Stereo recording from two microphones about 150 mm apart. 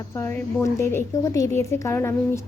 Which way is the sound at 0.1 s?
15° left (ahead or behind).